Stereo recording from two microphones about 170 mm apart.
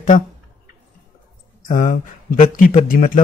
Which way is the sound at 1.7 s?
50° left (ahead or behind).